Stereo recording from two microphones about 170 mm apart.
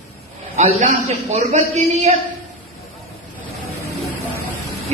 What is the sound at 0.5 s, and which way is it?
A man's voice, 40° right (ahead or behind).